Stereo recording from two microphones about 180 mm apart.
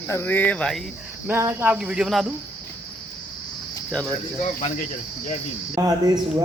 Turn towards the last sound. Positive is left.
turn(degrees=-20)  # may be behind; listen again after turning